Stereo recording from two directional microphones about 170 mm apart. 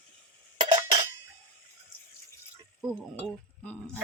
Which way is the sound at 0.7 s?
35° right (ahead or behind).